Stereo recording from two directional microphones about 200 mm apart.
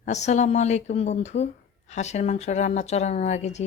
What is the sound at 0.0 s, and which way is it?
Speech, 35° left (ahead or behind).